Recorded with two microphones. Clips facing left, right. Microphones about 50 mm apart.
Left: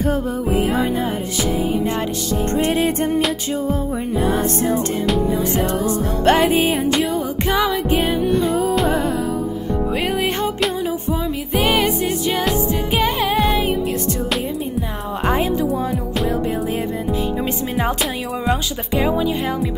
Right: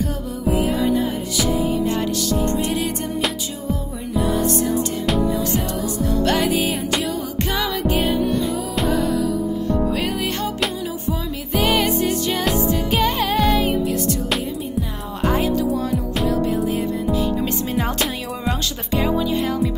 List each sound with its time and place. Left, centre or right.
0.0 s music: left
2.5 s music: left
7.3 s music: centre
8.3 s music: left
11.1 s music: left
11.7 s music: centre
18.9 s music: centre